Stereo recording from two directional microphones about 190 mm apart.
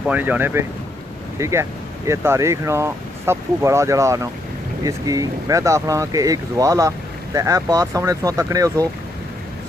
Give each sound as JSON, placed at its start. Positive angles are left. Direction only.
{"t": 0.0, "sound": "speech", "side_deg": -10}